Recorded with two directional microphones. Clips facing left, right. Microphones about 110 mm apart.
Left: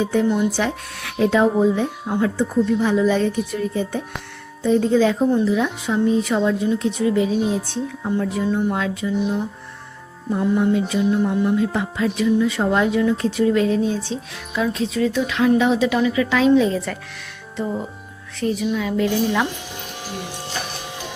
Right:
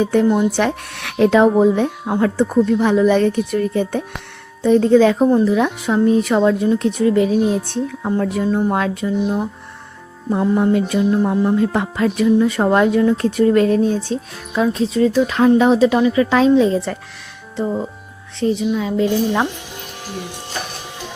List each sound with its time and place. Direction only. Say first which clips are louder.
0.0 s a woman's voice: right 4 dB; 55° right (ahead or behind)
8.4 s speech: right 3 dB; 40° right (ahead or behind)
8.7 s a woman's voice: right 4 dB; 55° right (ahead or behind)
10.6 s a woman's voice: right 3 dB; 55° right (ahead or behind)
11.1 s music: right 2 dB; 35° right (ahead or behind); by 13.0 s 55° right (ahead or behind)
13.0 s speech: right 4 dB; 45° right (ahead or behind); by 17.0 s 30° right (ahead or behind)
18.3 s a woman's voice: right 4 dB; 25° right (ahead or behind)